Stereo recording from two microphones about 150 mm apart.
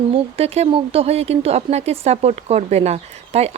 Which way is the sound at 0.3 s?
45° right (ahead or behind).